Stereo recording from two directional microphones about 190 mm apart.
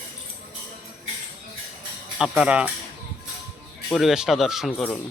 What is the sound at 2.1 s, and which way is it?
Speech, 5° right (ahead or behind).